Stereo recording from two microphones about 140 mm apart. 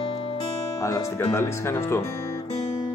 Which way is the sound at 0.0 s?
40° left (ahead or behind).